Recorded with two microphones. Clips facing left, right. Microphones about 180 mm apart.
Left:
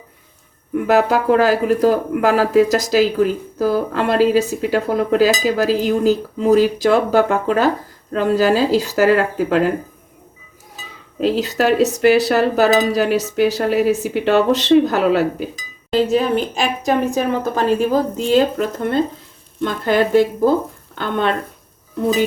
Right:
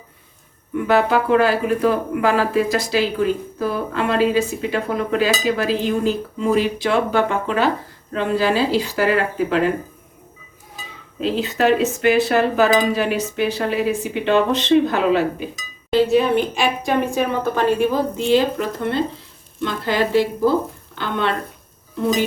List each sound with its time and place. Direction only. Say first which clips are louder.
0.9 s speech: left 2 dB; 40° left (ahead or behind)
11.2 s speech: left 2 dB; 40° left (ahead or behind)